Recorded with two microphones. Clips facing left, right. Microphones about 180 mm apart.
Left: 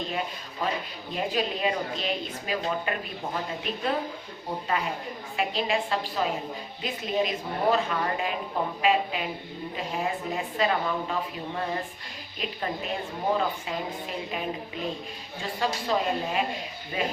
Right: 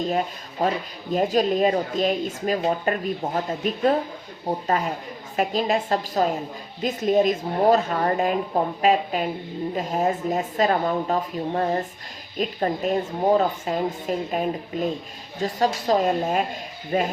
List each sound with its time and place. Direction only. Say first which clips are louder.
0.6 s a woman's voice: right 6 dB; 40° right (ahead or behind)